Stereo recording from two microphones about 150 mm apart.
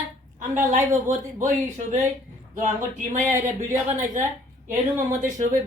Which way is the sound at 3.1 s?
60° right (ahead or behind).